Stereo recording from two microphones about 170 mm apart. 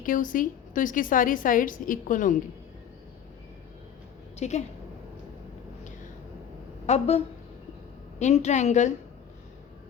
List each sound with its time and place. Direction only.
0.0 s a woman's voice: 50° left (ahead or behind)
4.4 s a woman's voice: 40° left (ahead or behind)
6.8 s speech: 40° left (ahead or behind)
8.2 s a woman's voice: 45° left (ahead or behind)